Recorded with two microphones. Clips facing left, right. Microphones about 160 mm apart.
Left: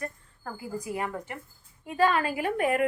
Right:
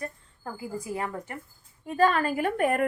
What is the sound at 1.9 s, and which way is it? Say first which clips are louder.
Speech: right 1 dB; 45° right (ahead or behind).